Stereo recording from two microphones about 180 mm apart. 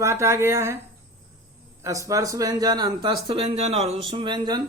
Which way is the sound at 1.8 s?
15° right (ahead or behind).